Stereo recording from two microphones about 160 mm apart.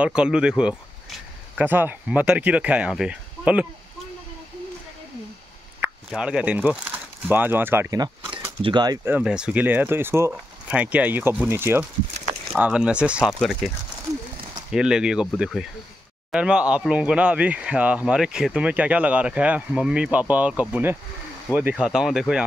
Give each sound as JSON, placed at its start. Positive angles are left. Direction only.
{"t": 0.0, "sound": "speech", "side_deg": -5}
{"t": 5.8, "sound": "speech", "side_deg": -5}
{"t": 9.0, "sound": "speech", "side_deg": -10}
{"t": 14.7, "sound": "speech", "side_deg": -5}